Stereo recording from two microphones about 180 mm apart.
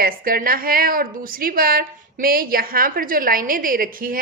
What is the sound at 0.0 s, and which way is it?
A woman's voice, 55° right (ahead or behind).